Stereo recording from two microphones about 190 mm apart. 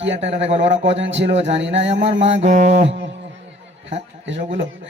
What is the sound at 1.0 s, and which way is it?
Speech, 70° right (ahead or behind).